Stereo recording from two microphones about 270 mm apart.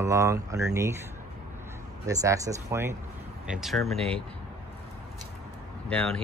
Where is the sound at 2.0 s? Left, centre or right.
Centre.